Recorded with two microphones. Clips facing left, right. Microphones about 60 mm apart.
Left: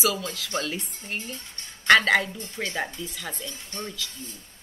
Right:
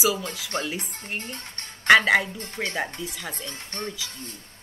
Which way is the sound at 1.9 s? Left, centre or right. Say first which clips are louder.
Right 1 dB; centre.